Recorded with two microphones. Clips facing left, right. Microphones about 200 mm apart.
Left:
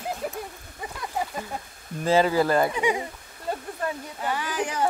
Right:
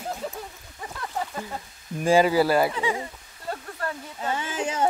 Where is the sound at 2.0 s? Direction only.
10° right (ahead or behind).